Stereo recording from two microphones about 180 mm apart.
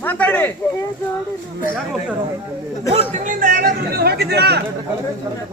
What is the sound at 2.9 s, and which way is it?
Speech, 35° right (ahead or behind).